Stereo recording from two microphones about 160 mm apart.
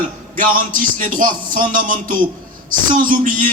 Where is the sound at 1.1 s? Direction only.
60° right (ahead or behind).